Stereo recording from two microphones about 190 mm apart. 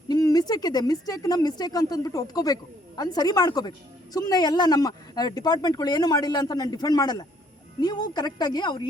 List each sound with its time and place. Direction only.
0.1 s speech: 20° left (ahead or behind)